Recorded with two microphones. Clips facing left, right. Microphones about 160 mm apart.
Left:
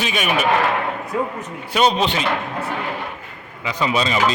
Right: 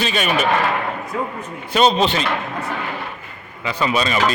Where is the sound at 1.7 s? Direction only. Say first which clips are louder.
Right 2 dB; 10° left (ahead or behind).